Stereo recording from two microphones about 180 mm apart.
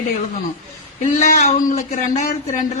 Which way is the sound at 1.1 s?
45° left (ahead or behind).